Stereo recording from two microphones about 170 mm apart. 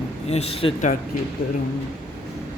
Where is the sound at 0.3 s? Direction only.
35° left (ahead or behind).